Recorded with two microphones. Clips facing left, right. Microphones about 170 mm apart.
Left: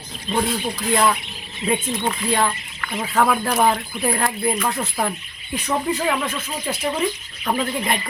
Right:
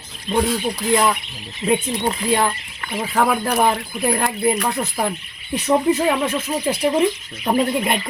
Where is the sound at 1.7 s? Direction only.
15° right (ahead or behind).